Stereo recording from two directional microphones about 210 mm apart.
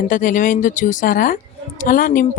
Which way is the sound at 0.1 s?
40° left (ahead or behind).